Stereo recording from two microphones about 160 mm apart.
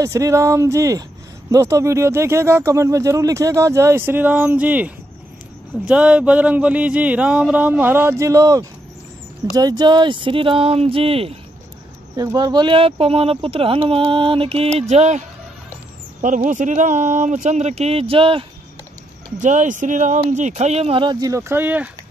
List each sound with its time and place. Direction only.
0.0 s speech: 20° right (ahead or behind); by 11.3 s 35° right (ahead or behind)
12.2 s speech: 20° right (ahead or behind)
19.4 s speech: 50° right (ahead or behind); by 21.8 s 10° right (ahead or behind)